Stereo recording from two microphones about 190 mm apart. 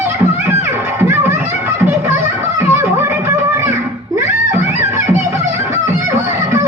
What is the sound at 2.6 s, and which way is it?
Music, 10° right (ahead or behind).